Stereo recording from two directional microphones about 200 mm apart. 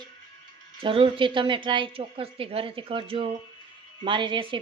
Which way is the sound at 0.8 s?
25° right (ahead or behind).